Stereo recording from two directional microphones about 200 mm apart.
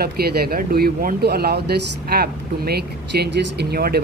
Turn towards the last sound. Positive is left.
turn(degrees=-50)  # may be behind; listen again after turning